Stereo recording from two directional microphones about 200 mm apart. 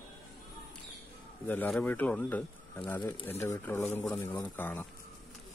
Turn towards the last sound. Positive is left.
turn(degrees=10)  # may be behind; listen again after turning